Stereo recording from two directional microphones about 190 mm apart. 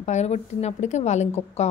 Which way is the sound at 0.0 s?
35° left (ahead or behind).